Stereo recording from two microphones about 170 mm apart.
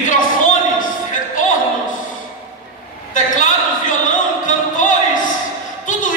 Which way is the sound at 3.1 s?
50° left (ahead or behind).